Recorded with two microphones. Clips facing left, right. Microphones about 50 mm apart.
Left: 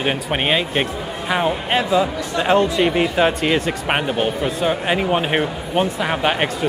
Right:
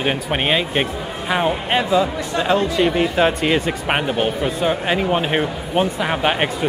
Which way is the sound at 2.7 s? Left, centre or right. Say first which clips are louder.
Even; centre.